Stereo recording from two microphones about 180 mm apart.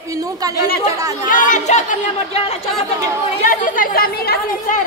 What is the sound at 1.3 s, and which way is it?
A woman's voice, 45° left (ahead or behind).